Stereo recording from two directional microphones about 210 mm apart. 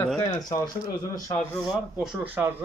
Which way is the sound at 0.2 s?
15° left (ahead or behind).